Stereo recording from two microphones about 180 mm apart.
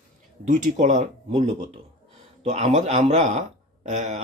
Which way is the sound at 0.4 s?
45° right (ahead or behind).